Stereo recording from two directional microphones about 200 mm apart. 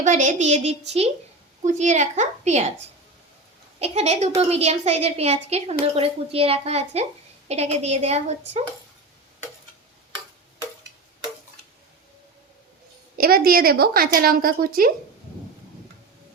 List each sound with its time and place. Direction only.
0.0 s a woman's voice: 40° right (ahead or behind)
3.8 s a woman's voice: 30° right (ahead or behind)
13.1 s a woman's voice: 50° right (ahead or behind)